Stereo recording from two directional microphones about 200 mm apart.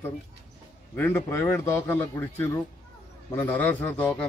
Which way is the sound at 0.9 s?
10° left (ahead or behind).